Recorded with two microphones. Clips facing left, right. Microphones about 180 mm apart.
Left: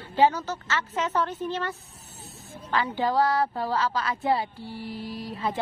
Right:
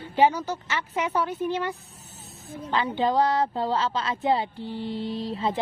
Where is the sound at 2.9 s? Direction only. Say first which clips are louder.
Right 1 dB; 20° right (ahead or behind).